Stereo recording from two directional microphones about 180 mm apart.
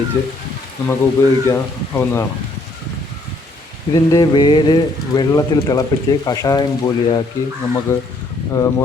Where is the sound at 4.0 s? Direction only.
20° left (ahead or behind).